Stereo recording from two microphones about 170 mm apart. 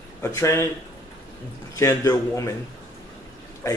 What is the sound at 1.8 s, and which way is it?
Speech, 20° left (ahead or behind).